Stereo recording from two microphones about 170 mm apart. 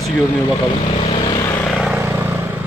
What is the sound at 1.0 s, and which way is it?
Vehicle, 30° left (ahead or behind).